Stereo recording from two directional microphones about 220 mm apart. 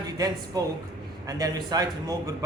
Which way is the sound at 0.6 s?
15° right (ahead or behind).